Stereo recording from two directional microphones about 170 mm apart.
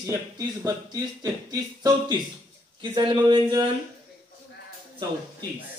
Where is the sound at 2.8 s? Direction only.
30° right (ahead or behind).